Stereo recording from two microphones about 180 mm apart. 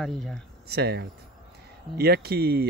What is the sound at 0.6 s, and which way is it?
Speech, 65° right (ahead or behind).